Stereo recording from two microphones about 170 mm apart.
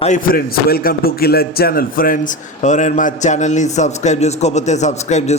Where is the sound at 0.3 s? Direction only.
60° left (ahead or behind).